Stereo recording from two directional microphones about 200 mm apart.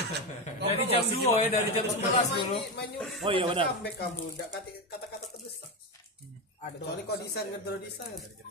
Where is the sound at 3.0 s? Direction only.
Centre (ahead or behind).